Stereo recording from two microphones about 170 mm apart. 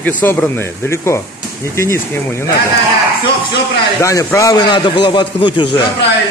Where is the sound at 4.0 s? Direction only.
20° left (ahead or behind).